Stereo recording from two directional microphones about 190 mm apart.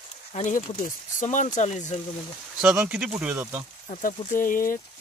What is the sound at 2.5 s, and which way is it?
Speech, 5° right (ahead or behind).